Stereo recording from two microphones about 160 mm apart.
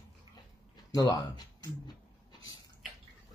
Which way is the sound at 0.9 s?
20° left (ahead or behind).